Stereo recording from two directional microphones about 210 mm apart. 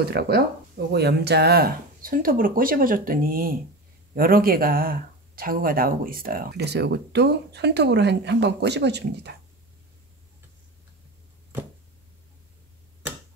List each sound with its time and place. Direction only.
0.0 s speech: 50° right (ahead or behind)